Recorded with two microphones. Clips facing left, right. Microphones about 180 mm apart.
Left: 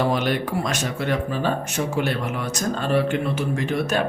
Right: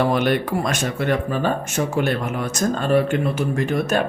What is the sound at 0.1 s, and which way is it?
A woman's voice, 55° right (ahead or behind).